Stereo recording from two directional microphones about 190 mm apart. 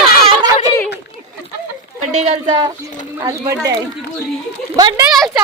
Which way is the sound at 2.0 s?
35° right (ahead or behind).